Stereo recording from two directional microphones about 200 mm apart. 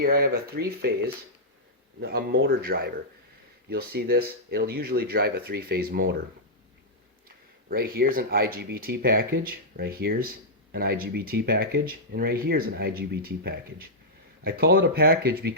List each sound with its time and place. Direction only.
0.0 s speech: 50° right (ahead or behind)
7.3 s speech: 50° right (ahead or behind)